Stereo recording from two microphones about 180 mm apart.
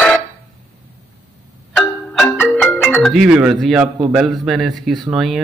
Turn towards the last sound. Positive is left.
turn(degrees=0)  # may be behind; listen again after turning